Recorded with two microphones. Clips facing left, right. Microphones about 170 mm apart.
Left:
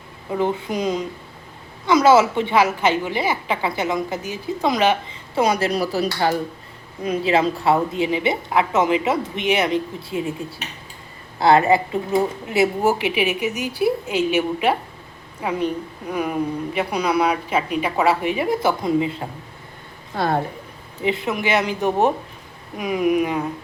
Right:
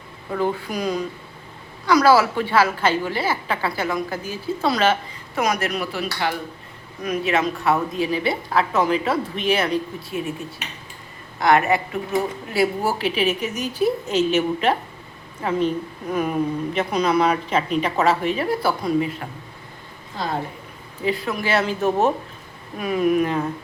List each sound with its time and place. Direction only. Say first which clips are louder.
0.3 s a woman's voice: left 2 dB; 20° left (ahead or behind)
5.3 s speech: left 3 dB; 30° left (ahead or behind)
7.0 s a woman's voice: left 3 dB; 25° left (ahead or behind)
11.3 s a woman's voice: left 3 dB; 30° left (ahead or behind)
20.1 s a woman's voice: left 5 dB; 65° left (ahead or behind)
21.0 s a woman's voice: left 2 dB; 20° left (ahead or behind)